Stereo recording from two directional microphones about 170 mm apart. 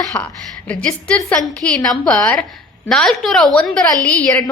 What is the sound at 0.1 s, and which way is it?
A woman's voice, 10° left (ahead or behind).